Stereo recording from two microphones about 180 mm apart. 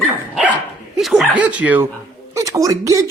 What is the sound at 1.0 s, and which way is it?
Speech, centre (ahead or behind).